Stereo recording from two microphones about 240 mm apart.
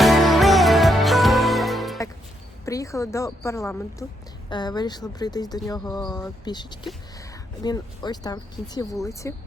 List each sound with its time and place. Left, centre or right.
0.0 s music: centre
2.6 s a woman's voice: centre